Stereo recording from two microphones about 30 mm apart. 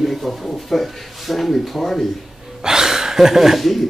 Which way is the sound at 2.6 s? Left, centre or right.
Centre.